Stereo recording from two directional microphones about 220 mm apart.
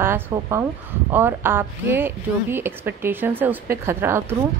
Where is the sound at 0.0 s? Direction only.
10° right (ahead or behind).